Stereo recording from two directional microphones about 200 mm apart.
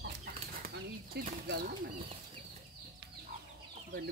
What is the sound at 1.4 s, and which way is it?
Speech, 55° right (ahead or behind).